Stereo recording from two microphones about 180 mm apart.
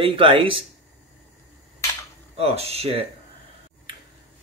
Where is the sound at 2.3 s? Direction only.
35° right (ahead or behind).